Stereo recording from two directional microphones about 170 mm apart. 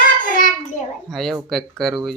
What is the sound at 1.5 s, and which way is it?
Speech, centre (ahead or behind).